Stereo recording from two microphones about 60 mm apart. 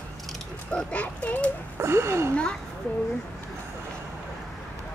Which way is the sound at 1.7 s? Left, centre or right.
Right.